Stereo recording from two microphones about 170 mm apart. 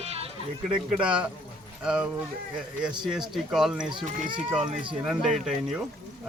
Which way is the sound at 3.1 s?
Centre (ahead or behind).